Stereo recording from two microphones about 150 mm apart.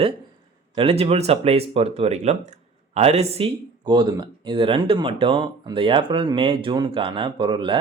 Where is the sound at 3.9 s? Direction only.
30° right (ahead or behind).